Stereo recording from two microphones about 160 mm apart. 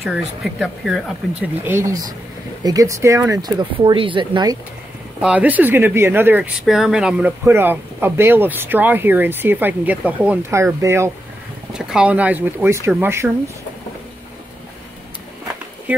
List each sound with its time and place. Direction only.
0.0 s speech: centre (ahead or behind)
1.6 s speech: 15° right (ahead or behind)
3.8 s speech: 35° right (ahead or behind)
5.2 s speech: 10° right (ahead or behind)
11.7 s speech: 5° right (ahead or behind)
15.9 s speech: 10° right (ahead or behind)